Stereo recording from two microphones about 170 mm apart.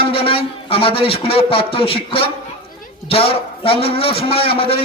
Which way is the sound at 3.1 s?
35° left (ahead or behind).